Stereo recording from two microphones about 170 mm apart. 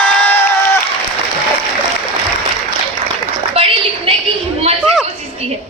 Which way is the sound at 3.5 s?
35° right (ahead or behind).